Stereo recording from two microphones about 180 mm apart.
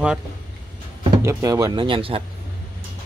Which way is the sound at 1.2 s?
15° right (ahead or behind).